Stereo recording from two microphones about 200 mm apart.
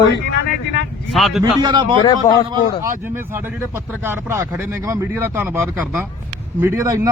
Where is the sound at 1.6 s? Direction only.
20° right (ahead or behind).